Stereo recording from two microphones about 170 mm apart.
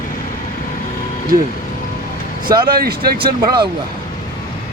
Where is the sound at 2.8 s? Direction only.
65° right (ahead or behind).